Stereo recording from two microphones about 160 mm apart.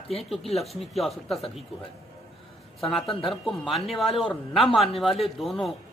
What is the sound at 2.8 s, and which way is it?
A man's voice, centre (ahead or behind).